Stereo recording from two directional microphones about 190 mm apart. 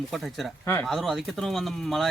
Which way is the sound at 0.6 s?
10° left (ahead or behind).